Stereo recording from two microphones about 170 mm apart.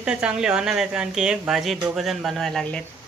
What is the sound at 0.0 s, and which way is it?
Speech, 5° right (ahead or behind).